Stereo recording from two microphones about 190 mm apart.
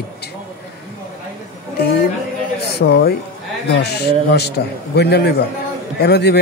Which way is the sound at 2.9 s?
55° left (ahead or behind).